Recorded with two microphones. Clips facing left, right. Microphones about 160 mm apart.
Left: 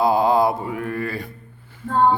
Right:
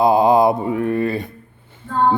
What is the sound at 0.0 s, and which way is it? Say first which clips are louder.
Mantra: right 4 dB; 20° right (ahead or behind).